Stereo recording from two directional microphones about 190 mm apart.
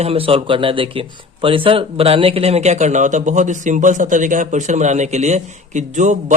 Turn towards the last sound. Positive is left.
turn(degrees=-40)  # may be behind; listen again after turning